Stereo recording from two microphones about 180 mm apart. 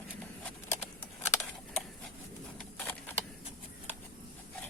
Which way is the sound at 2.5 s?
10° left (ahead or behind).